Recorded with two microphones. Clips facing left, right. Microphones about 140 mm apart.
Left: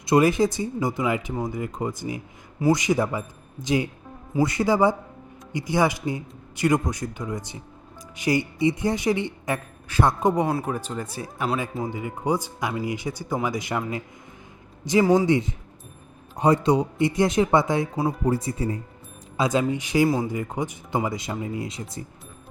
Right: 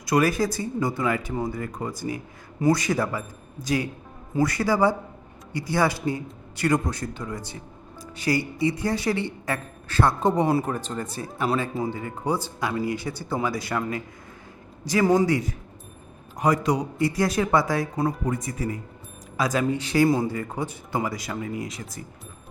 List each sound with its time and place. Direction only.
0.0 s a woman's voice: 25° left (ahead or behind)
10.4 s speech: 5° right (ahead or behind)
10.7 s a woman's voice: 10° left (ahead or behind)
15.0 s a woman's voice: 5° left (ahead or behind)
15.3 s speech: 25° left (ahead or behind)
17.9 s speech: 5° left (ahead or behind)
18.3 s speech: 30° left (ahead or behind)